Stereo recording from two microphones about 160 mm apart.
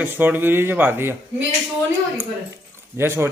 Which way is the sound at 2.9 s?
15° right (ahead or behind).